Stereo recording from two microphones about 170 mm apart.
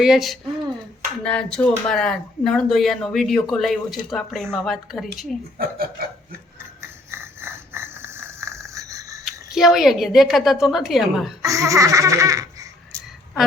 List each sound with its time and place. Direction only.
0.0 s speech: centre (ahead or behind)
5.5 s speech: 65° right (ahead or behind)
6.8 s a sound: 15° right (ahead or behind)
9.2 s speech: centre (ahead or behind)
11.4 s speech: 20° right (ahead or behind)